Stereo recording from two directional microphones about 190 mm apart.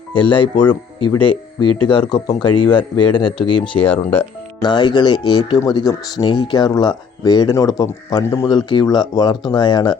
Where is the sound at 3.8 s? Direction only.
10° left (ahead or behind).